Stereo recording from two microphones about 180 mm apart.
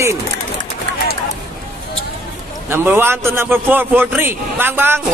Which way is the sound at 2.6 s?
15° right (ahead or behind).